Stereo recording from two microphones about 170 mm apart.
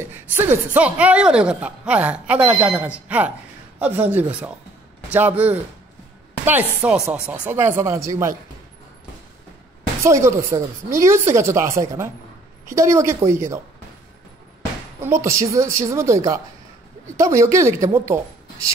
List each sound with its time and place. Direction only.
0.0 s speech: 15° right (ahead or behind)
10.0 s speech: 15° right (ahead or behind)
15.2 s speech: 15° right (ahead or behind)